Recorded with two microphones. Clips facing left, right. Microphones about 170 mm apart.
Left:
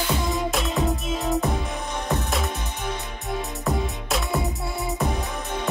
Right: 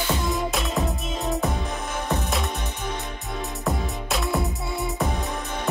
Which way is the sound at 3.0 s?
Centre (ahead or behind).